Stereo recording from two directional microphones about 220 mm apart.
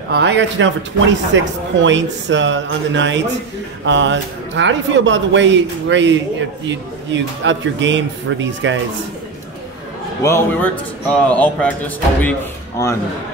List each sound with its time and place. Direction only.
0.1 s speech: 50° right (ahead or behind)
10.2 s a man's voice: 10° left (ahead or behind)